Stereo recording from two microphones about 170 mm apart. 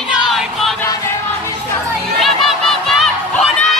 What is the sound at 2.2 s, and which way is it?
Crowd, centre (ahead or behind).